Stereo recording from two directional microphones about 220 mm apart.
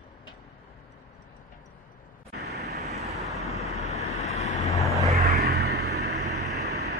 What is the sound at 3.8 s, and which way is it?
Vehicle, 30° left (ahead or behind).